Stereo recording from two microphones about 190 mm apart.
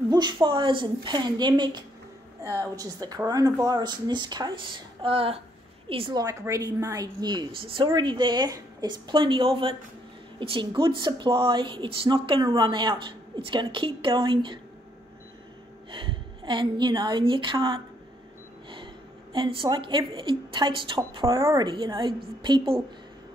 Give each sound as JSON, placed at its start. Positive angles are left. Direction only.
{"t": 0.1, "sound": "speech", "side_deg": -20}
{"t": 15.9, "sound": "speech", "side_deg": -25}
{"t": 19.3, "sound": "speech", "side_deg": -25}